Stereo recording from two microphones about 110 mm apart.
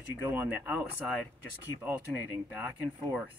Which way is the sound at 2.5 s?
15° right (ahead or behind).